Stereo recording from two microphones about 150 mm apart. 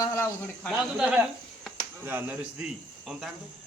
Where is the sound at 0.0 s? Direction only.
20° left (ahead or behind).